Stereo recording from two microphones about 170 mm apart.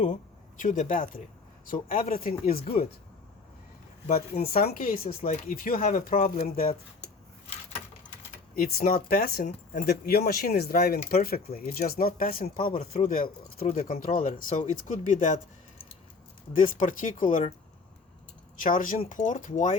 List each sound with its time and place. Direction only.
0.0 s speech: 50° left (ahead or behind)
4.0 s speech: 60° left (ahead or behind)
8.5 s speech: 60° left (ahead or behind)
16.6 s speech: 50° left (ahead or behind)
18.6 s speech: 50° left (ahead or behind)